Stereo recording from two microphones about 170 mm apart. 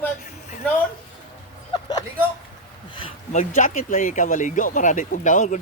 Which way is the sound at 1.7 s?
25° left (ahead or behind).